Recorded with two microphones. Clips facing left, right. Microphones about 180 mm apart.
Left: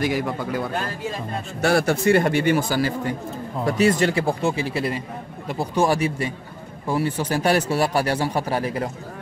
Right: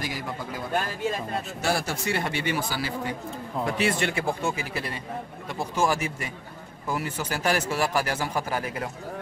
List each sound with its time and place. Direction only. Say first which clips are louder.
0.0 s a man's voice: left 9 dB; 65° left (ahead or behind); by 8.9 s 35° left (ahead or behind)